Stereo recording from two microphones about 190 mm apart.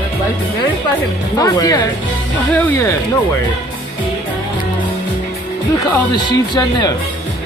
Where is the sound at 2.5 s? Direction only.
10° left (ahead or behind).